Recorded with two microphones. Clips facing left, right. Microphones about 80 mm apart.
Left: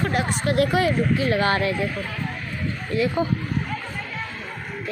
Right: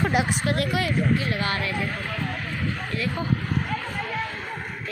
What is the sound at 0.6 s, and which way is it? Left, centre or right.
Speech, left.